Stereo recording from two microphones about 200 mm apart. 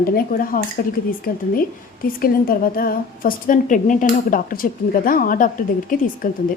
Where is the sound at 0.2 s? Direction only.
45° left (ahead or behind).